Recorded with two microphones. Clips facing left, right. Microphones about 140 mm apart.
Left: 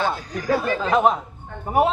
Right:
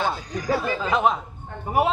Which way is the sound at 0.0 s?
10° right (ahead or behind).